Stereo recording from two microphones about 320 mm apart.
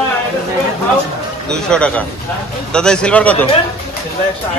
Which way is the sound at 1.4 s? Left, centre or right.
Centre.